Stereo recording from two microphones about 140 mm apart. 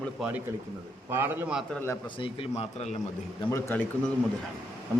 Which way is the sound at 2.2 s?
40° left (ahead or behind).